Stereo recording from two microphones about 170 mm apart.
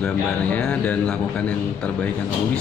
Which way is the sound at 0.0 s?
5° left (ahead or behind).